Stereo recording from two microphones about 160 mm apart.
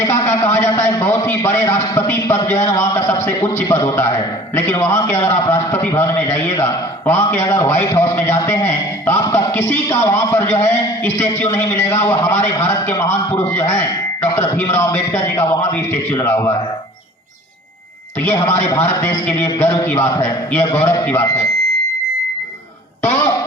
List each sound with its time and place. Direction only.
0.0 s a man's voice: 15° left (ahead or behind)
18.3 s a man's voice: 15° left (ahead or behind)